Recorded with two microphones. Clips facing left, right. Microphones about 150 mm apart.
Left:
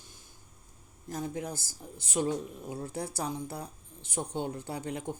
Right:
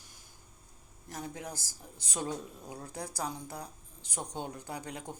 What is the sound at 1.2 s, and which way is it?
Speech, 25° left (ahead or behind).